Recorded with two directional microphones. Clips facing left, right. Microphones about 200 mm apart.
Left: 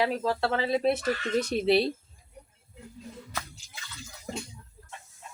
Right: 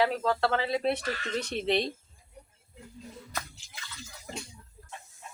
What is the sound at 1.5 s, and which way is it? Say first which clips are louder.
Speech: left 4 dB; 5° left (ahead or behind).